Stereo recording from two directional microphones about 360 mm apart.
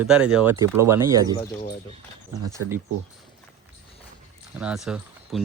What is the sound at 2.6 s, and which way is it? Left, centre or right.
Speech, right.